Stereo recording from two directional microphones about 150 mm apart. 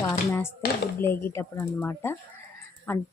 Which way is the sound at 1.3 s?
15° left (ahead or behind).